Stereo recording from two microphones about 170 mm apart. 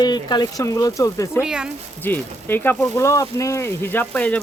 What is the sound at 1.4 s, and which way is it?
Speech, 5° right (ahead or behind).